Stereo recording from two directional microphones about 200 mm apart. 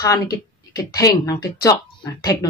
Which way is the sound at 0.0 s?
15° left (ahead or behind).